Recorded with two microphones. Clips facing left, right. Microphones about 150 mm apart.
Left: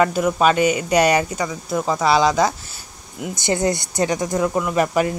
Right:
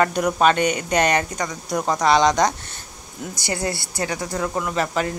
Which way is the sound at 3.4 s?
20° left (ahead or behind).